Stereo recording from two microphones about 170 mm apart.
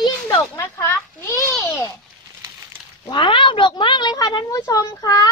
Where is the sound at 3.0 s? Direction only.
30° left (ahead or behind).